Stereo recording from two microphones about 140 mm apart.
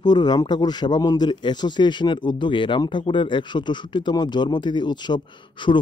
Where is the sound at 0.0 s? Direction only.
30° left (ahead or behind).